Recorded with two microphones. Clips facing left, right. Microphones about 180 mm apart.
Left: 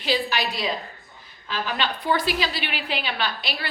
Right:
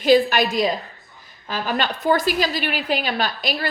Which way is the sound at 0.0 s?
50° right (ahead or behind).